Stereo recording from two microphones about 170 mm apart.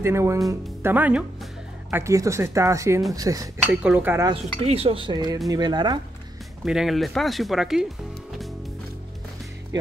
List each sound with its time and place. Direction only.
0.0 s speech: 15° right (ahead or behind)
3.7 s speech: 5° right (ahead or behind)
4.6 s speech: 35° right (ahead or behind)
6.6 s speech: 5° right (ahead or behind)